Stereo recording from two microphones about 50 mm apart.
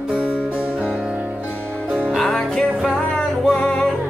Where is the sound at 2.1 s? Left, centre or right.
Centre.